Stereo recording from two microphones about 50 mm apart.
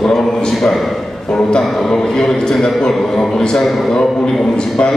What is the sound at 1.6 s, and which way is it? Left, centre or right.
A man's voice, centre.